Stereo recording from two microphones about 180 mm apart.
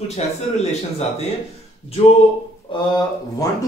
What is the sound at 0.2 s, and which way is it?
Speech, 40° left (ahead or behind).